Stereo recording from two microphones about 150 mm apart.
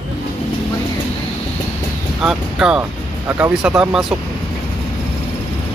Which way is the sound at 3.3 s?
10° right (ahead or behind).